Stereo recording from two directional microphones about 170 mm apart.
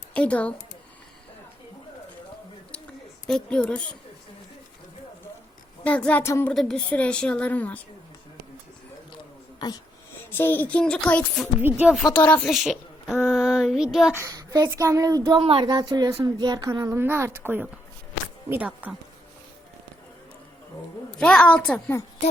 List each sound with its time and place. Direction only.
0.1 s speech: 5° left (ahead or behind)
3.2 s a woman's voice: 5° left (ahead or behind)
5.8 s a woman's voice: 10° left (ahead or behind)
6.5 s a woman's voice: 5° left (ahead or behind)
9.6 s speech: 25° left (ahead or behind)
10.3 s a woman's voice: 10° left (ahead or behind)
11.6 s speech: 10° right (ahead or behind)
12.1 s a woman's voice: 10° left (ahead or behind)
13.2 s child singing: 5° right (ahead or behind)
14.2 s speech: 20° right (ahead or behind)
21.2 s a woman's voice: 5° left (ahead or behind)